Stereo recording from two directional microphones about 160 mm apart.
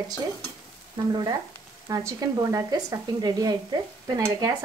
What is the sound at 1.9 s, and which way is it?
A woman's voice, 20° right (ahead or behind).